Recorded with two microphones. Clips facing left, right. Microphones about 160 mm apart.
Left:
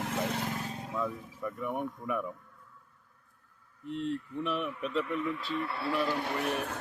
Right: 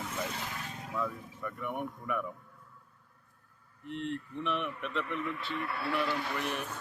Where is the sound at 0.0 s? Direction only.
60° left (ahead or behind).